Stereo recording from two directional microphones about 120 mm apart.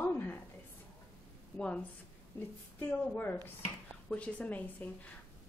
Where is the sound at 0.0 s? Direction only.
20° left (ahead or behind).